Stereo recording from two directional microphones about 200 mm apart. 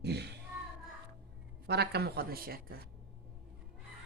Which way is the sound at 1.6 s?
55° right (ahead or behind).